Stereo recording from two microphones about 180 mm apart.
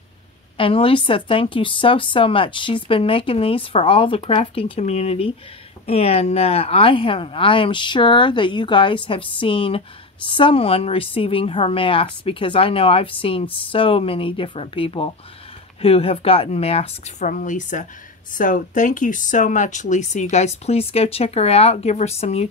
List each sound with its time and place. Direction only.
0.6 s speech: 30° left (ahead or behind)